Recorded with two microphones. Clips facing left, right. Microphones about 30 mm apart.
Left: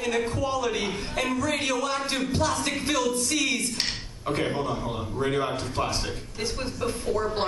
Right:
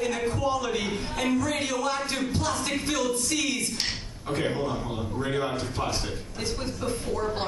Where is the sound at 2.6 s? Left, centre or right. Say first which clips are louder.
Left 1 dB; left.